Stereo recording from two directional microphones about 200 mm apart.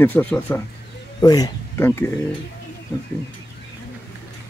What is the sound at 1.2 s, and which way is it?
Speech, 20° left (ahead or behind).